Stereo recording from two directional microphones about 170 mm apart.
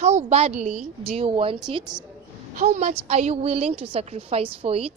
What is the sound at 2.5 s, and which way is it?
A woman's voice, 45° right (ahead or behind).